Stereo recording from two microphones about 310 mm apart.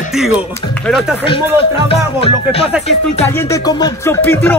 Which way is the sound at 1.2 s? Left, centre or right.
Centre.